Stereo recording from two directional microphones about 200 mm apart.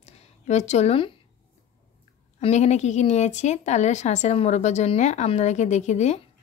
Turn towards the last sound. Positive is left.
turn(degrees=35)  # may be behind; listen again after turning